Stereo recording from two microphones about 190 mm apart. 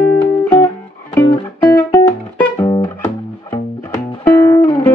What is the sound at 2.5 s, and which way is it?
Music, 20° left (ahead or behind).